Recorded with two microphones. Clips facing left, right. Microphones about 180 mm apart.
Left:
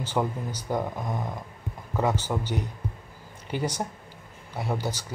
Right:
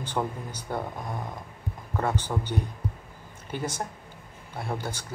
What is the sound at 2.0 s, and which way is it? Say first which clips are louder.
Speech: left 2 dB; 10° left (ahead or behind).